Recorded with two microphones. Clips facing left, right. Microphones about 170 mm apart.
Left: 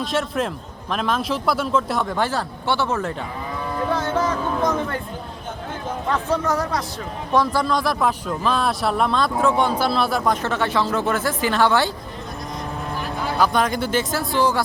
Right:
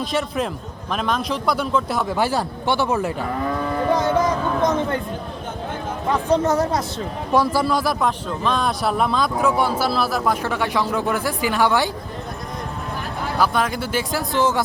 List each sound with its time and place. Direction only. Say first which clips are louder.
0.0 s a man's voice: even; centre (ahead or behind)
3.2 s sheep: right 7 dB; 60° right (ahead or behind)
3.9 s a sound: right 3 dB; 15° right (ahead or behind)
6.1 s speech: right 4 dB; 20° right (ahead or behind)
7.3 s a man's voice: right 1 dB; 10° right (ahead or behind)
13.4 s a man's voice: left 1 dB; 5° right (ahead or behind); by 14.6 s 20° right (ahead or behind)